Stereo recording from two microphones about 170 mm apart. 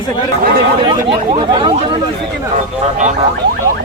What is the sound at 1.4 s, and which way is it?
Speech, 25° right (ahead or behind).